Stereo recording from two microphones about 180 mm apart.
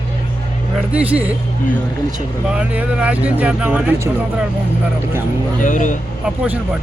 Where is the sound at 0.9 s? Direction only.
10° right (ahead or behind).